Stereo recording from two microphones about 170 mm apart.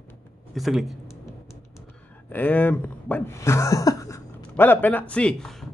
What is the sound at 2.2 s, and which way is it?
A man's voice, 10° left (ahead or behind).